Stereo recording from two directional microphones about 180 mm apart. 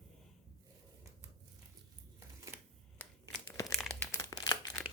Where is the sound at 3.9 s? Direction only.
15° left (ahead or behind).